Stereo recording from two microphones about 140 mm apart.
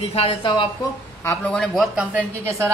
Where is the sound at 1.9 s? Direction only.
15° right (ahead or behind).